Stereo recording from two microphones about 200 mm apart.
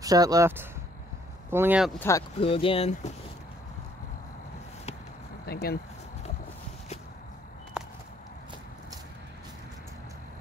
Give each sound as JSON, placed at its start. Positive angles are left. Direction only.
{"t": 0.0, "sound": "speech", "side_deg": -20}
{"t": 2.0, "sound": "speech", "side_deg": 15}
{"t": 2.4, "sound": "speech", "side_deg": 25}
{"t": 5.4, "sound": "speech", "side_deg": 50}